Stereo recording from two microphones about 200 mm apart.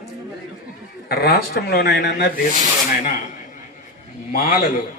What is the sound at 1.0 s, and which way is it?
Speech, 50° left (ahead or behind).